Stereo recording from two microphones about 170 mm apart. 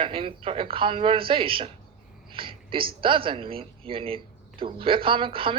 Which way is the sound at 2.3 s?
30° right (ahead or behind).